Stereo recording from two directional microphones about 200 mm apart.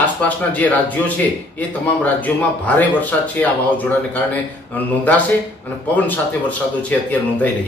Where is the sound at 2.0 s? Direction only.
5° left (ahead or behind).